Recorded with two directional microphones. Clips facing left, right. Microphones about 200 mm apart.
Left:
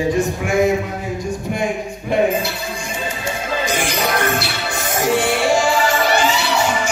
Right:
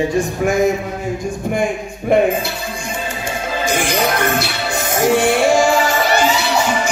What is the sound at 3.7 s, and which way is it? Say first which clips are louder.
Music: right 4 dB; 50° right (ahead or behind).